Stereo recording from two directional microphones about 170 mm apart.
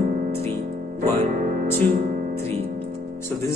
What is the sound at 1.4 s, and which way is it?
Music, 50° right (ahead or behind).